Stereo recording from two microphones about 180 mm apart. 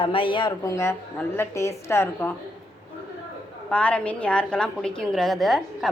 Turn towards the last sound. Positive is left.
turn(degrees=0)  # may be behind; listen again after turning